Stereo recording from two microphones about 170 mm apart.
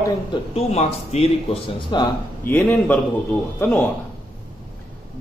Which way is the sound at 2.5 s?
10° left (ahead or behind).